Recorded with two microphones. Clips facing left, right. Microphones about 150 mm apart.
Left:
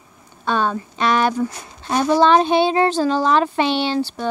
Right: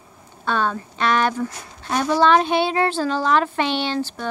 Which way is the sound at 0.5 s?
15° left (ahead or behind).